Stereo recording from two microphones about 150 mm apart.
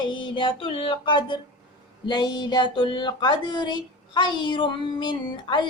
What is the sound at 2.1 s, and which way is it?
Speech, 30° left (ahead or behind).